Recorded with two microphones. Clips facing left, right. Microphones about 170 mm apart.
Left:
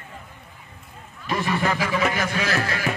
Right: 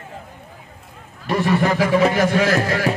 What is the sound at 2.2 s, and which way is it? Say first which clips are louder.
Speech: right 8 dB; 45° right (ahead or behind).